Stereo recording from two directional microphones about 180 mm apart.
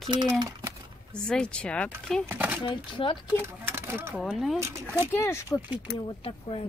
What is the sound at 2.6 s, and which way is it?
Speech, 25° left (ahead or behind).